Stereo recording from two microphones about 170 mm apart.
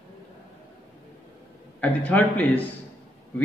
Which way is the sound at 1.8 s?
10° left (ahead or behind).